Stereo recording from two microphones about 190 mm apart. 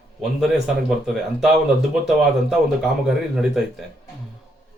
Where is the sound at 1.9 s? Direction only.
Centre (ahead or behind).